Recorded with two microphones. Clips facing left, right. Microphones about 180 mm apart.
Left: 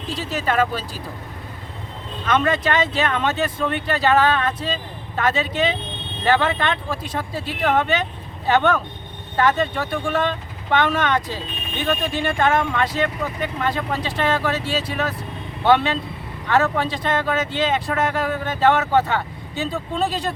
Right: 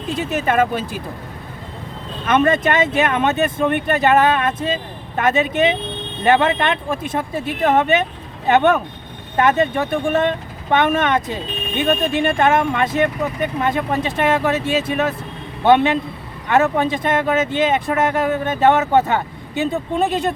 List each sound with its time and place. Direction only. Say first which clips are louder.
0.1 s speech: right 4 dB; 20° right (ahead or behind)
2.2 s speech: right 4 dB; 20° right (ahead or behind)